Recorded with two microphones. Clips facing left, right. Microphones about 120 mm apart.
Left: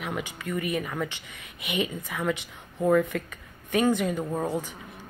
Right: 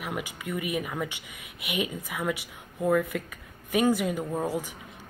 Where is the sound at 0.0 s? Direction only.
10° right (ahead or behind).